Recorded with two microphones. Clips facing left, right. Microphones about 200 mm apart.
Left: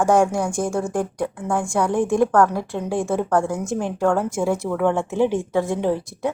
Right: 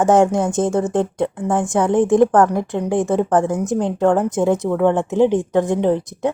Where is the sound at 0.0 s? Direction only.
20° right (ahead or behind).